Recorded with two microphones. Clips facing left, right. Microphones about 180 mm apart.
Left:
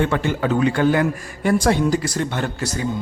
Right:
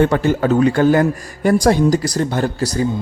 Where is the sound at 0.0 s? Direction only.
40° right (ahead or behind).